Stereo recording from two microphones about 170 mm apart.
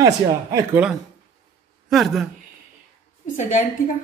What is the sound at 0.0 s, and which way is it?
Speech, 20° right (ahead or behind).